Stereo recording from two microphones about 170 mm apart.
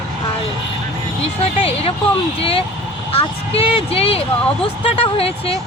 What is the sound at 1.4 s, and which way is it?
Speech, 35° left (ahead or behind).